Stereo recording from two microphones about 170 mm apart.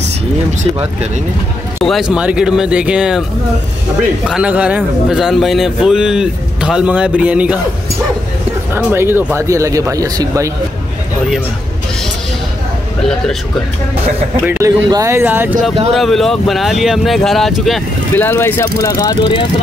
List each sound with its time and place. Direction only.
1.9 s a man's voice: 5° right (ahead or behind)
4.3 s a man's voice: 5° right (ahead or behind)
8.7 s speech: 15° right (ahead or behind)
14.4 s speech: 10° right (ahead or behind)
15.9 s a man's voice: centre (ahead or behind)
18.1 s speech: 15° left (ahead or behind)